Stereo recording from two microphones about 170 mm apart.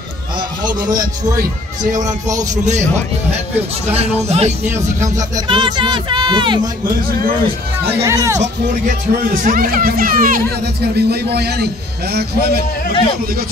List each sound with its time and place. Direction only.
0.7 s speech: 20° right (ahead or behind)
2.5 s speech: 45° right (ahead or behind)
3.9 s speech: 40° right (ahead or behind)
5.0 s speech: 20° right (ahead or behind)
8.0 s speech: 20° right (ahead or behind)
8.4 s speech: 50° right (ahead or behind)
11.0 s a man's voice: 70° right (ahead or behind)